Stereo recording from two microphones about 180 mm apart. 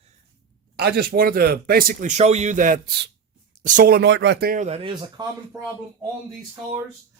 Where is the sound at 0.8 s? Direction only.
60° right (ahead or behind).